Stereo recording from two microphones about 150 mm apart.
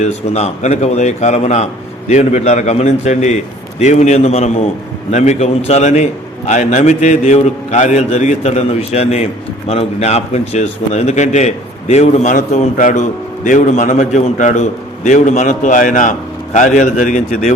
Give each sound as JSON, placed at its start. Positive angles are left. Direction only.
{"t": 0.0, "sound": "a man's voice", "side_deg": 50}